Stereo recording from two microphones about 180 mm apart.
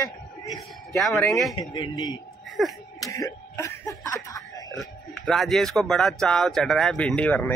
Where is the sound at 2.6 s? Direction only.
Centre (ahead or behind).